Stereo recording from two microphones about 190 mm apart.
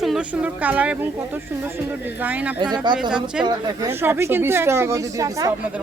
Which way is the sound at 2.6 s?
20° right (ahead or behind).